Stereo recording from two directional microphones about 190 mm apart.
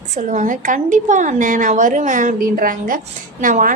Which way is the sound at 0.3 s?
40° right (ahead or behind).